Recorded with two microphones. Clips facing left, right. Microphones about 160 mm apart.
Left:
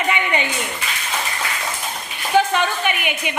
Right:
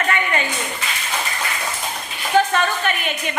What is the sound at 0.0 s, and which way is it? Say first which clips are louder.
Clapping: left 1 dB; 15° left (ahead or behind).